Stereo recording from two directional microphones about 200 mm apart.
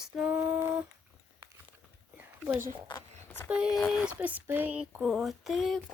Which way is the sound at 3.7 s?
Centre (ahead or behind).